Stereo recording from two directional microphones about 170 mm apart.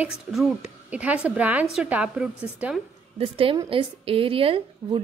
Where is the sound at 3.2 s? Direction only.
35° right (ahead or behind).